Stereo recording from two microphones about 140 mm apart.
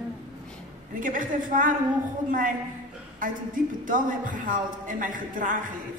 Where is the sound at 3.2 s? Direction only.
70° right (ahead or behind).